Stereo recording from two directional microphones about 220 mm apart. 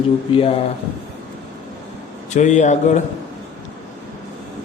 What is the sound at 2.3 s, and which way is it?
Speech, 35° left (ahead or behind).